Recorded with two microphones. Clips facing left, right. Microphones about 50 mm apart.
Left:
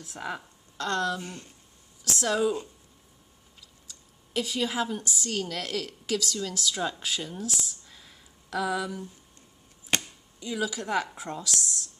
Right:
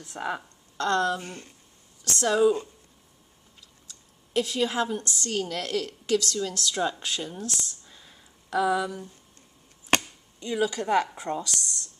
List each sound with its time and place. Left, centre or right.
0.0 s speech: centre
1.2 s speech: right
2.1 s a woman's voice: centre
3.8 s a woman's voice: centre
7.8 s a sound: centre
10.4 s a woman's voice: centre